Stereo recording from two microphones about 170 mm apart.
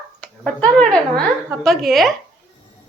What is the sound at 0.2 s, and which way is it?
Speech, 5° left (ahead or behind).